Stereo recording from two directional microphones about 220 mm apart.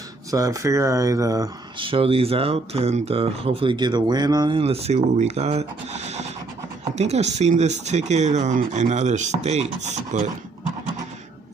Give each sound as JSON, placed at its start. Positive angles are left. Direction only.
{"t": 0.3, "sound": "speech", "side_deg": -15}